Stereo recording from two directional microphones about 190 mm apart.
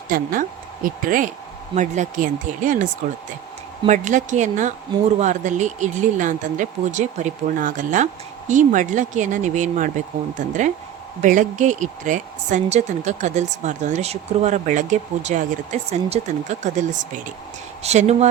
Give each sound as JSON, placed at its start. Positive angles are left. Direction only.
{"t": 0.1, "sound": "a woman's voice", "side_deg": -50}